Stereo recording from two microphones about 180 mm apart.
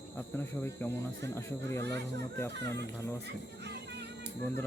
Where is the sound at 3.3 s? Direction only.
70° right (ahead or behind).